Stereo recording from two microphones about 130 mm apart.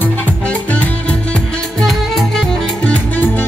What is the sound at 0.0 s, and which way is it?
Music, 15° left (ahead or behind).